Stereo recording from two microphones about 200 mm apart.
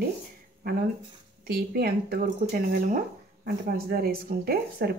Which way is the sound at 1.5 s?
50° right (ahead or behind).